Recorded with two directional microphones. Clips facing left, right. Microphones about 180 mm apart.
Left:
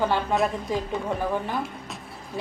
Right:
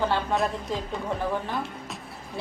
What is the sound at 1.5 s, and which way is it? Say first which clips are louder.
Music: left 1 dB; centre (ahead or behind).